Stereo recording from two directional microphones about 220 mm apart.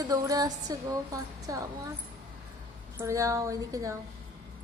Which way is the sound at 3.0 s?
10° right (ahead or behind).